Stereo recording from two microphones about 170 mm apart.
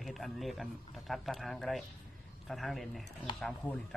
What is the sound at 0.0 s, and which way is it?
A man's voice, centre (ahead or behind).